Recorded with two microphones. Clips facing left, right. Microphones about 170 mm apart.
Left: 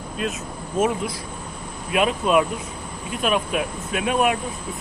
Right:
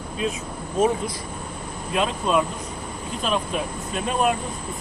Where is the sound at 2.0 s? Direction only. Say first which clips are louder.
Left 3 dB; 10° left (ahead or behind).